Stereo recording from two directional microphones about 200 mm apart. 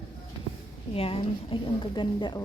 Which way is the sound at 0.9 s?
30° left (ahead or behind).